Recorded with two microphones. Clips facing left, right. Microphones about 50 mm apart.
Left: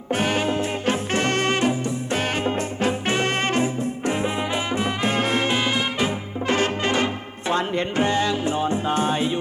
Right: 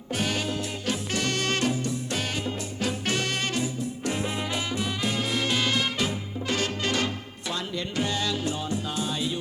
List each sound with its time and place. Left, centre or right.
0.1 s music: left
2.1 s music: left